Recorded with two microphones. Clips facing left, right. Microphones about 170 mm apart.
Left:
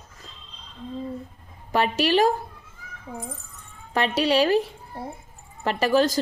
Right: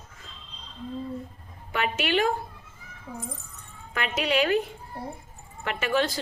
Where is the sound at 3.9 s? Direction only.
35° left (ahead or behind).